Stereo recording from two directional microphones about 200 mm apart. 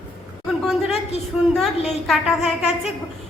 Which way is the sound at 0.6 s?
Centre (ahead or behind).